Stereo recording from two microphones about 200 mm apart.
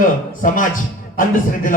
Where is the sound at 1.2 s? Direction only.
40° left (ahead or behind).